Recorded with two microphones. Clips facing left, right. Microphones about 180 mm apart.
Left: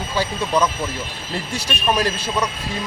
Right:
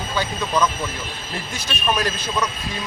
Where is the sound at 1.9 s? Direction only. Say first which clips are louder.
Left 3 dB; 30° left (ahead or behind).